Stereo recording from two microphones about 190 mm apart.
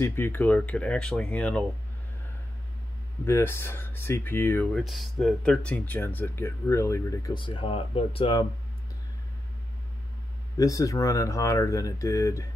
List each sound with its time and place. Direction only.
0.0 s speech: 10° left (ahead or behind)
3.3 s speech: 10° left (ahead or behind)
4.7 s speech: centre (ahead or behind); by 8.5 s 25° left (ahead or behind)
10.6 s speech: 15° left (ahead or behind)